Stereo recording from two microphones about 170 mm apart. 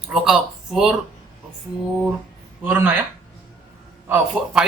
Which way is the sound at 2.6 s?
10° right (ahead or behind).